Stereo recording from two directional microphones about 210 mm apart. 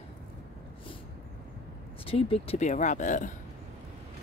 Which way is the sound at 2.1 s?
25° left (ahead or behind).